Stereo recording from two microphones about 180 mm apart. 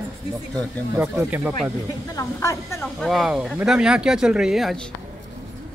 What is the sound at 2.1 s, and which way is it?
Speech, 15° left (ahead or behind).